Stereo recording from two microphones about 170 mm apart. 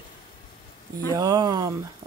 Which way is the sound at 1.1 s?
20° right (ahead or behind).